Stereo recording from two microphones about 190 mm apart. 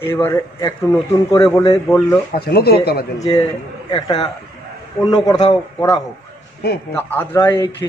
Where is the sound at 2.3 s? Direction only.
55° left (ahead or behind).